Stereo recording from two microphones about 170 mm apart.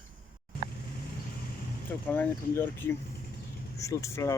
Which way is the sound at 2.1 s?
10° left (ahead or behind).